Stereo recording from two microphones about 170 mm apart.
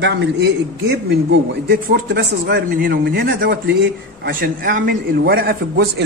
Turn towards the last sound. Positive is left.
turn(degrees=-65)  # may be behind; listen again after turning